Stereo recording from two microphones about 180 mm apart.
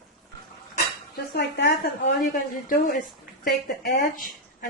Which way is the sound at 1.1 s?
60° left (ahead or behind).